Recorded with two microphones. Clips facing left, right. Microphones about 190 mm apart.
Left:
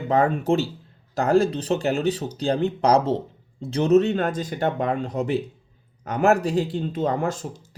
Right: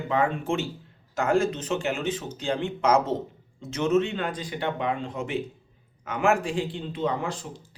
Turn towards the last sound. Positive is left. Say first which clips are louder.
# left 4 dB
turn(degrees=45)  # may be behind; listen again after turning